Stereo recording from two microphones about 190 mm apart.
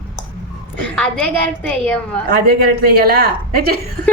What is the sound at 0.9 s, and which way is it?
A woman's voice, 5° left (ahead or behind).